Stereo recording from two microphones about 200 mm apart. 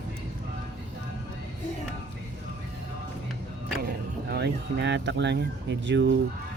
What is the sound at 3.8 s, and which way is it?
Speech, 50° right (ahead or behind).